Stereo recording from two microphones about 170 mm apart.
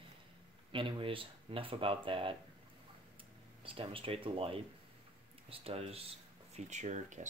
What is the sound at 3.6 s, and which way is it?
Speech, 30° right (ahead or behind).